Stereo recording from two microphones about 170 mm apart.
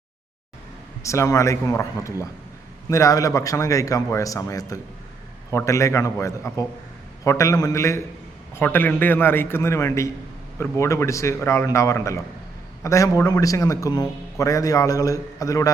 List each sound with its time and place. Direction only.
1.0 s a man's voice: 15° left (ahead or behind)